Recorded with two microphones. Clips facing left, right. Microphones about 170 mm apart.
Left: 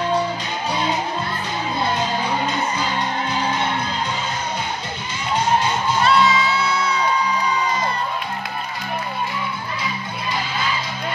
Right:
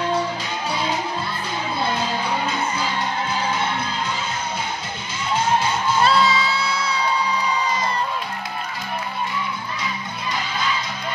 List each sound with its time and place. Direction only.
6.0 s music: 35° right (ahead or behind)